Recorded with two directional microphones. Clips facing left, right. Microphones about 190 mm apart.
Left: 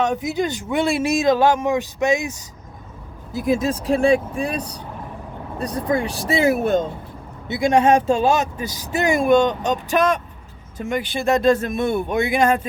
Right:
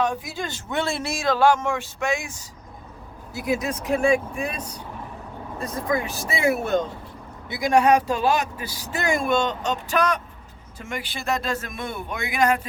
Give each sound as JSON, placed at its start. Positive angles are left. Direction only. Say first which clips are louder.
{"t": 0.0, "sound": "speech", "louder": "left 5 dB", "side_deg": 20}
{"t": 3.5, "sound": "speech", "louder": "left 4 dB", "side_deg": 30}